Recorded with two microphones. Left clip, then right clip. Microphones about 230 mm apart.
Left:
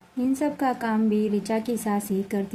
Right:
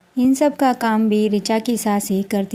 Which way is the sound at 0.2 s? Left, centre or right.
Right.